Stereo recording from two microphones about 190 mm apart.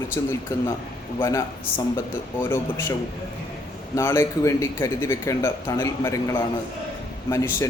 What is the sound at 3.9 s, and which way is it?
A man's voice, 15° left (ahead or behind).